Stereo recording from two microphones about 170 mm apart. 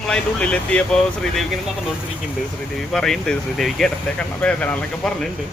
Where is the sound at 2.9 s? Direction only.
5° left (ahead or behind).